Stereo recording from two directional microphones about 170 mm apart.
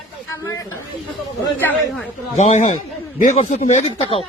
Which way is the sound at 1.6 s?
10° left (ahead or behind).